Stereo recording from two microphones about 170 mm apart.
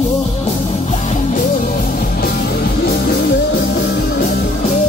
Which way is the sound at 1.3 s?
55° left (ahead or behind).